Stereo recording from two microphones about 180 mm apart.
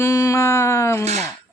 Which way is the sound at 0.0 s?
15° left (ahead or behind).